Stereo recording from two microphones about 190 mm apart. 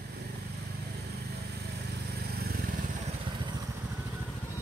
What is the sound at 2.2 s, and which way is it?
Vehicle, 55° right (ahead or behind).